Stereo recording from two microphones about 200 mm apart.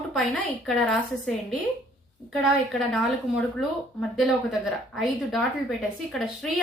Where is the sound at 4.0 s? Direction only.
Centre (ahead or behind).